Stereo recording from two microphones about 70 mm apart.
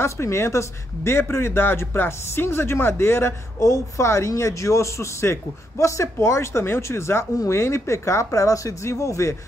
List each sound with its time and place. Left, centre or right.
0.0 s speech: left